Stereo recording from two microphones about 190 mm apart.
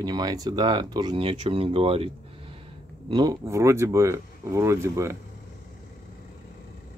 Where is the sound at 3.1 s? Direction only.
20° right (ahead or behind).